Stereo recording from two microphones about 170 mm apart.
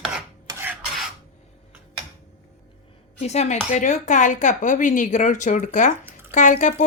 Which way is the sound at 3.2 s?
40° left (ahead or behind).